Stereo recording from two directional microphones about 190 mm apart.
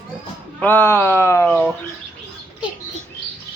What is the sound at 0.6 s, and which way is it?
Speech, 10° left (ahead or behind).